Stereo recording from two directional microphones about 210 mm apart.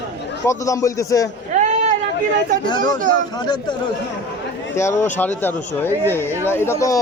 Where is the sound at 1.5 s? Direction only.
35° right (ahead or behind).